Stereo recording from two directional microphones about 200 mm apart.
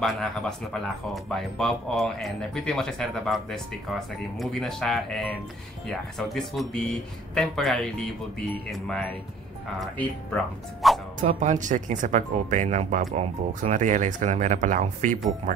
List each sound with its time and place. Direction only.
0.0 s speech: centre (ahead or behind)
11.2 s speech: 40° right (ahead or behind)